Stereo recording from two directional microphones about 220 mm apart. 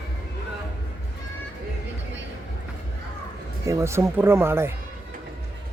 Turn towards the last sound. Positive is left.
turn(degrees=-10)  # may be behind; listen again after turning